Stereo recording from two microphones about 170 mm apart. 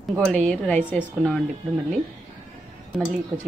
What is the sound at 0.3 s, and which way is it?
A woman's voice, 5° left (ahead or behind).